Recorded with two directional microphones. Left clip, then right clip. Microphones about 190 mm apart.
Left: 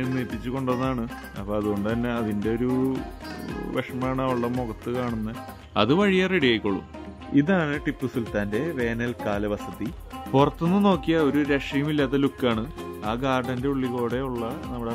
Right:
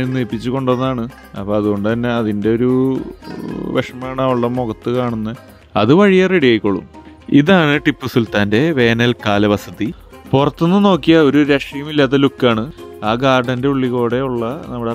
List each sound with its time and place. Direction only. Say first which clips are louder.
0.0 s speech: right 9 dB; 45° right (ahead or behind)
3.3 s speech: right 7 dB; centre (ahead or behind)
3.7 s speech: right 8 dB; 45° right (ahead or behind)